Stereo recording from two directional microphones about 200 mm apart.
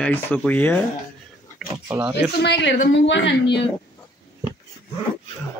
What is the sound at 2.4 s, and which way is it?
Speech, 60° left (ahead or behind).